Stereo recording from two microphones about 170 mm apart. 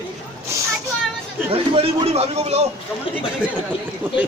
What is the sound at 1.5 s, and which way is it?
A man's voice, 35° right (ahead or behind).